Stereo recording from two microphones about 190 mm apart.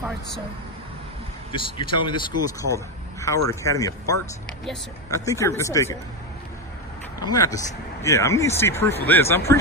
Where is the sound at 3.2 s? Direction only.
15° left (ahead or behind).